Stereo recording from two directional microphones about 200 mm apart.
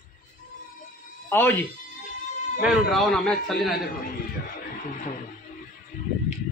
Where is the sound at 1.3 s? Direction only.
10° left (ahead or behind).